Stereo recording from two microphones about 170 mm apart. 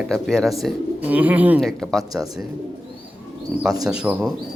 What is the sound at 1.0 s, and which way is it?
Speech, 10° right (ahead or behind).